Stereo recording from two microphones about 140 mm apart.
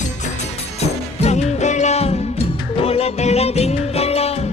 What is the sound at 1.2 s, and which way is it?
Music, 50° left (ahead or behind).